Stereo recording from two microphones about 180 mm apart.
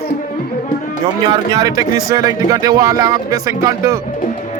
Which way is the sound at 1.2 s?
25° right (ahead or behind).